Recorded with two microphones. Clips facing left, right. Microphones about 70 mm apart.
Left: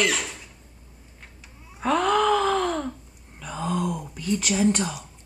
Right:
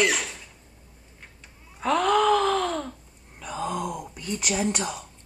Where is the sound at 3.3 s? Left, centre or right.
Centre.